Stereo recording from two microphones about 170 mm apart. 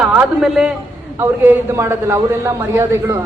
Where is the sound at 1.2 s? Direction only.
15° right (ahead or behind).